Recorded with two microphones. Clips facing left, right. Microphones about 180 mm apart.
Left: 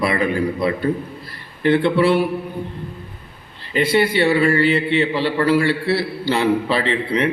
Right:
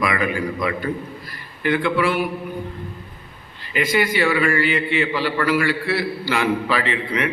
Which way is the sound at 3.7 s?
30° left (ahead or behind).